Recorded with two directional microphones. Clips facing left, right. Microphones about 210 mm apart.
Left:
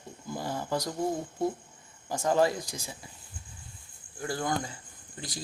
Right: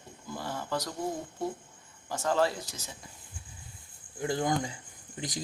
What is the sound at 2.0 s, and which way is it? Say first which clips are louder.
Speech: left 3 dB; 15° left (ahead or behind).